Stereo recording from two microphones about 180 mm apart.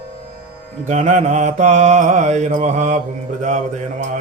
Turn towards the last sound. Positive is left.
turn(degrees=-45)  # may be behind; listen again after turning